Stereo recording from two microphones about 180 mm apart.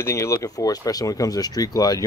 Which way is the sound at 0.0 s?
15° left (ahead or behind).